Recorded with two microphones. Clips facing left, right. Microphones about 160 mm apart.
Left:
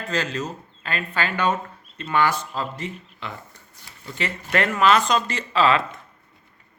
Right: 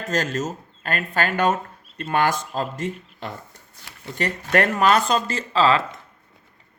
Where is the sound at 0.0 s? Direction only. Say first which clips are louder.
Right 2 dB; 45° right (ahead or behind).